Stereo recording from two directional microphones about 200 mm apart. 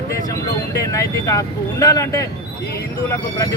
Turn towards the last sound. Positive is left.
turn(degrees=15)  # may be behind; listen again after turning